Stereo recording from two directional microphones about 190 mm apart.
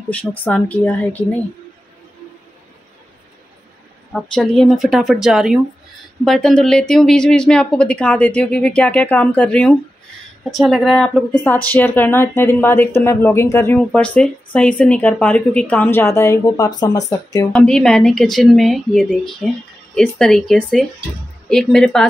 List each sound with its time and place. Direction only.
0.4 s speech: 10° left (ahead or behind)
4.1 s a woman's voice: 5° left (ahead or behind)
17.5 s a woman's voice: centre (ahead or behind)